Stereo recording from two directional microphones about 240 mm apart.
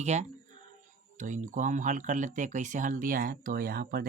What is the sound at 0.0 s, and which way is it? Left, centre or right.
Speech, right.